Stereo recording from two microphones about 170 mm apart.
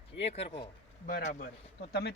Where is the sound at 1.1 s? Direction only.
55° left (ahead or behind); by 2.1 s 70° left (ahead or behind).